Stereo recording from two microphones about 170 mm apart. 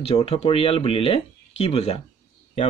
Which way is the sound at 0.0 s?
35° left (ahead or behind).